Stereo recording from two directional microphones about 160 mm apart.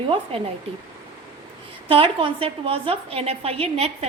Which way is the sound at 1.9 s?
35° right (ahead or behind).